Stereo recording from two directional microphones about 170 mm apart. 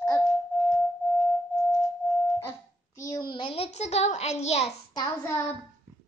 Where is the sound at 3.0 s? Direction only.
25° left (ahead or behind); by 4.7 s 40° left (ahead or behind).